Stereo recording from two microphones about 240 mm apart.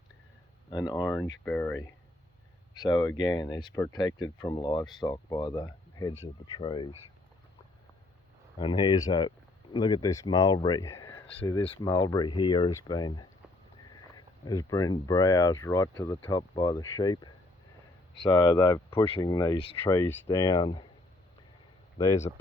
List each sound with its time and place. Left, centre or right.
0.7 s speech: centre
8.5 s speech: centre
21.9 s speech: centre